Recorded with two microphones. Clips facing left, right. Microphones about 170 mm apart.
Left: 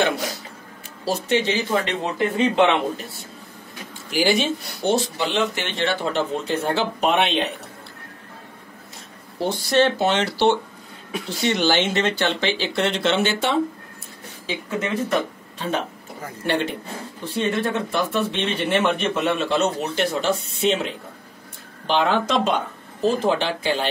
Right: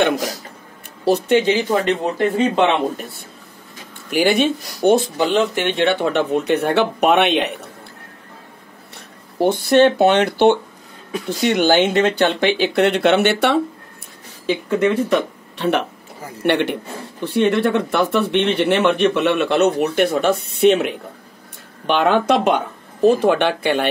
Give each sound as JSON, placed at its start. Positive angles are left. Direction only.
{"t": 1.4, "sound": "a man's voice", "side_deg": -50}
{"t": 9.4, "sound": "speech", "side_deg": -55}